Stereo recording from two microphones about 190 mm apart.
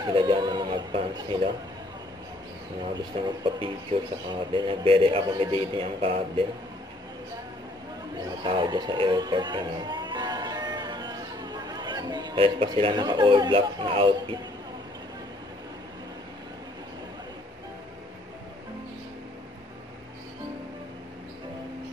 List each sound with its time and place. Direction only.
0.0 s speech: 25° right (ahead or behind)
2.9 s speech: 25° right (ahead or behind)
8.2 s speech: 20° right (ahead or behind)